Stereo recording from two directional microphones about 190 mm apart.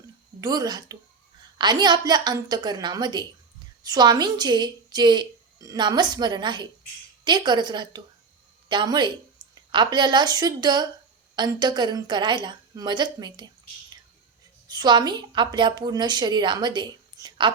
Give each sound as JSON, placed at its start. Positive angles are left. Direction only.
{"t": 0.4, "sound": "speech", "side_deg": -20}
{"t": 14.7, "sound": "speech", "side_deg": -20}